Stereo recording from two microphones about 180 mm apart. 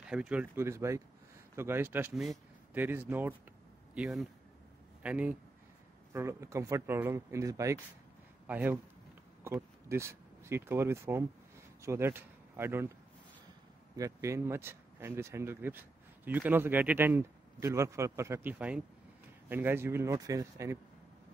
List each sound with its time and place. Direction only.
0.1 s speech: 5° right (ahead or behind)
13.9 s speech: 20° right (ahead or behind)